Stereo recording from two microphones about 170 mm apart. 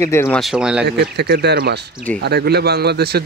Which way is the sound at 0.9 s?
70° right (ahead or behind).